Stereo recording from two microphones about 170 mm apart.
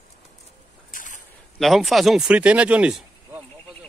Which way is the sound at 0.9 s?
50° left (ahead or behind).